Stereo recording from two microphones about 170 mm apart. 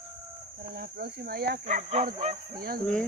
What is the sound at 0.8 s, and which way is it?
Speech, 70° right (ahead or behind).